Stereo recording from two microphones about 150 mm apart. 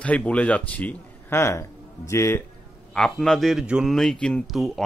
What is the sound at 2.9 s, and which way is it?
A man's voice, centre (ahead or behind).